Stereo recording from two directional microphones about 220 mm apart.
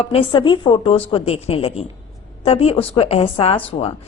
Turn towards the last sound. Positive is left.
turn(degrees=25)  # may be behind; listen again after turning